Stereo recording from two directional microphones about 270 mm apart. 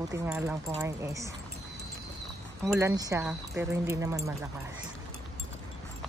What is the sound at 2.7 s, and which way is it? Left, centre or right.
Speech, centre.